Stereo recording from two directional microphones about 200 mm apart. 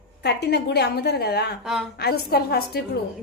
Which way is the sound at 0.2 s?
55° left (ahead or behind).